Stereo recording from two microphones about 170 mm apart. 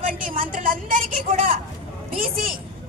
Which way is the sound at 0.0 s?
50° right (ahead or behind).